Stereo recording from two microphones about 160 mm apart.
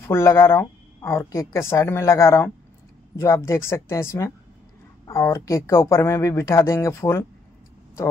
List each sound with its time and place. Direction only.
0.1 s a woman's voice: 15° left (ahead or behind)